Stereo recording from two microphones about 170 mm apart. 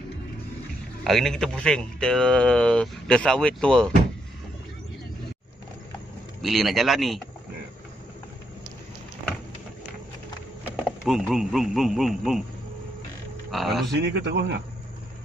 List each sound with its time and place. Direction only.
1.0 s speech: centre (ahead or behind)
6.4 s speech: centre (ahead or behind)
11.1 s speech: centre (ahead or behind)
13.5 s speech: centre (ahead or behind)
13.9 s speech: 85° right